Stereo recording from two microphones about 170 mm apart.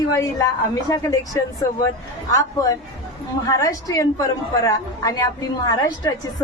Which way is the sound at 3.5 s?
20° left (ahead or behind).